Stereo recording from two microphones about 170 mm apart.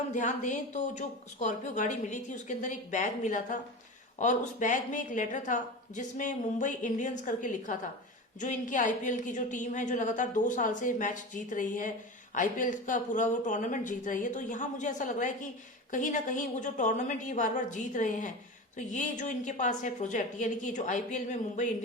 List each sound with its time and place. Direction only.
0.1 s a woman's voice: 45° left (ahead or behind)